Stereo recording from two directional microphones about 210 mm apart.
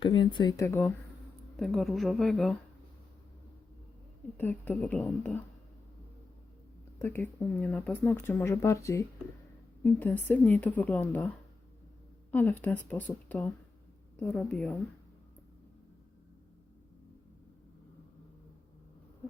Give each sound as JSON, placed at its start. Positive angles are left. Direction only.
{"t": 0.0, "sound": "speech", "side_deg": 25}
{"t": 1.5, "sound": "a woman's voice", "side_deg": 0}
{"t": 4.4, "sound": "a woman's voice", "side_deg": 10}
{"t": 7.6, "sound": "a woman's voice", "side_deg": 0}
{"t": 8.0, "sound": "a woman's voice", "side_deg": 10}
{"t": 12.3, "sound": "a woman's voice", "side_deg": 10}